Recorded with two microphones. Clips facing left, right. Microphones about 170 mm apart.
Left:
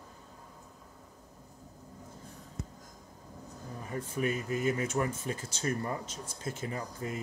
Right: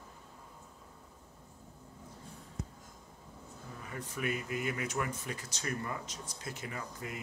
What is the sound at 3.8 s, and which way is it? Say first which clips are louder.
Speech: left 5 dB; 30° left (ahead or behind).